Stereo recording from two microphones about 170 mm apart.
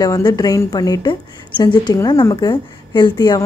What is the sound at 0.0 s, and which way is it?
A woman's voice, 20° left (ahead or behind).